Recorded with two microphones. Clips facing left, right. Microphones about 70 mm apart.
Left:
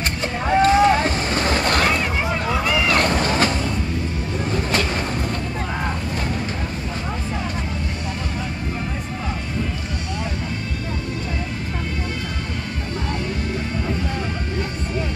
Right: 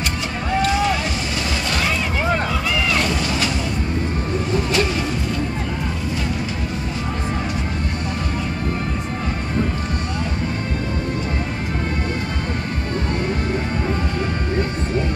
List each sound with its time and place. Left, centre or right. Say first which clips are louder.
0.5 s vehicle: left 5 dB; left
1.5 s a sound: left 4 dB; left
2.9 s cat: left 2 dB; left